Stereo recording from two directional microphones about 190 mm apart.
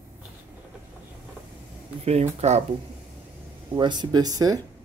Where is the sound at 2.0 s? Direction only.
35° right (ahead or behind).